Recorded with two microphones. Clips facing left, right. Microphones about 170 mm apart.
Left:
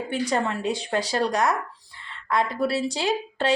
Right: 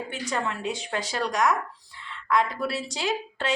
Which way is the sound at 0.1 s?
35° left (ahead or behind).